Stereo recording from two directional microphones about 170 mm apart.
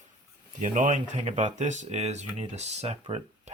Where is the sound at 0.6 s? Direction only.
50° right (ahead or behind).